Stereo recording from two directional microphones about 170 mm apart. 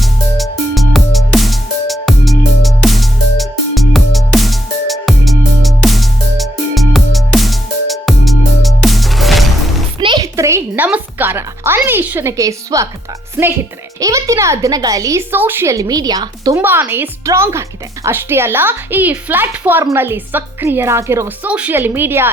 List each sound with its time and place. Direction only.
0.0 s music: centre (ahead or behind)
10.0 s a sound: 30° right (ahead or behind)
10.3 s a sound: 15° right (ahead or behind)
10.8 s music: 10° right (ahead or behind)
11.8 s a woman's voice: 10° right (ahead or behind)
14.0 s a woman's voice: 20° right (ahead or behind)
16.6 s speech: 10° right (ahead or behind)